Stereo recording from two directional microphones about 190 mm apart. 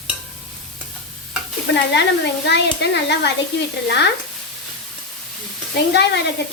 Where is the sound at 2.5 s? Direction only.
65° left (ahead or behind).